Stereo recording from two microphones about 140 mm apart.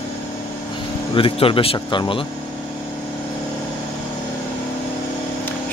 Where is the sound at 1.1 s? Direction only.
40° left (ahead or behind).